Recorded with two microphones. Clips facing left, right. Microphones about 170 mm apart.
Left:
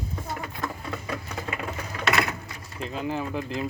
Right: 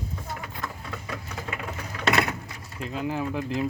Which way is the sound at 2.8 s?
5° right (ahead or behind).